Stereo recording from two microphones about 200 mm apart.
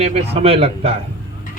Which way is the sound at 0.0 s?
30° right (ahead or behind).